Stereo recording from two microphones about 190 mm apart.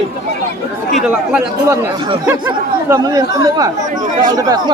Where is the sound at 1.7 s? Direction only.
25° right (ahead or behind).